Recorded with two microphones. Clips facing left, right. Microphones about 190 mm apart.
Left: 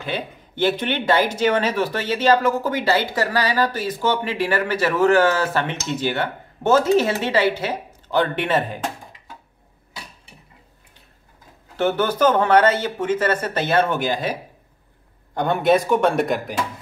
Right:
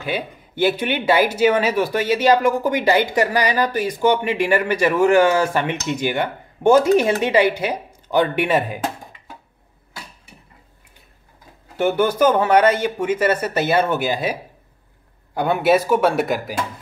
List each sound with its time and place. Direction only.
0.0 s speech: 10° right (ahead or behind)
11.7 s speech: 10° right (ahead or behind)